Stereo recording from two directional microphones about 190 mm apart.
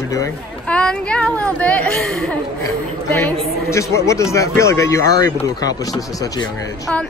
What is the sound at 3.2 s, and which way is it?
Speech, 15° left (ahead or behind).